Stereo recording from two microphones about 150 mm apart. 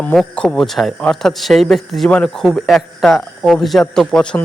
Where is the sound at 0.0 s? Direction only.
5° left (ahead or behind).